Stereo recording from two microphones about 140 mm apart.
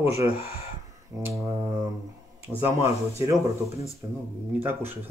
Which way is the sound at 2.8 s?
20° right (ahead or behind).